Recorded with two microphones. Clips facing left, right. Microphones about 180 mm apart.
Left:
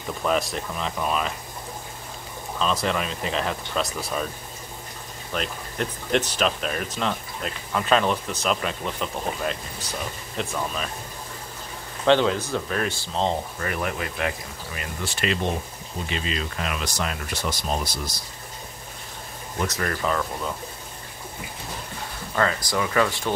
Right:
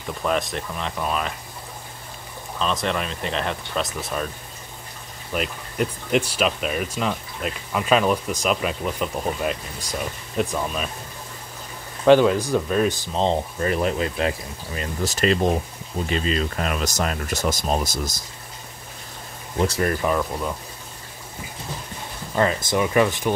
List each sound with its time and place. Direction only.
0.2 s speech: centre (ahead or behind)
2.6 s speech: centre (ahead or behind)
5.3 s speech: 5° right (ahead or behind)
12.1 s speech: 10° right (ahead or behind)
14.8 s speech: 40° right (ahead or behind)
19.6 s speech: 25° right (ahead or behind)
20.0 s speech: 15° right (ahead or behind)
22.3 s speech: 20° right (ahead or behind)